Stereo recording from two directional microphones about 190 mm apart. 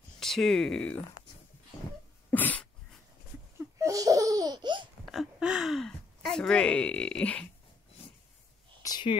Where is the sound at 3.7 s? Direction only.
15° right (ahead or behind).